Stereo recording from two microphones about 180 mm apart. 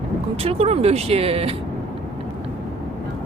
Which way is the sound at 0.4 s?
35° right (ahead or behind).